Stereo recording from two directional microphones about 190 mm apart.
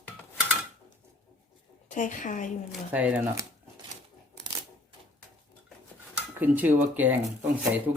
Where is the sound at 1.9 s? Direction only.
40° left (ahead or behind).